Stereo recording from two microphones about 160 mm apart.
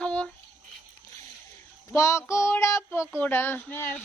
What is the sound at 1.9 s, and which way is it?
Child singing, 20° left (ahead or behind).